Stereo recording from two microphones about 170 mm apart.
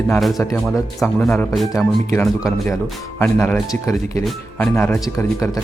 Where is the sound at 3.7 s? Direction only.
20° left (ahead or behind).